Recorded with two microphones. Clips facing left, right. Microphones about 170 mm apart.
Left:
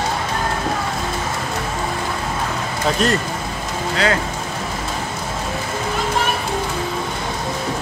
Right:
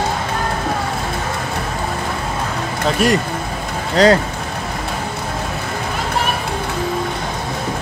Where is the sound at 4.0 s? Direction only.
40° right (ahead or behind).